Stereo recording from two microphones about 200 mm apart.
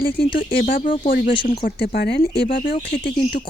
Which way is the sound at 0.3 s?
45° left (ahead or behind).